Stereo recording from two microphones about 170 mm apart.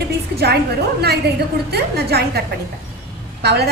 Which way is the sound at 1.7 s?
70° right (ahead or behind).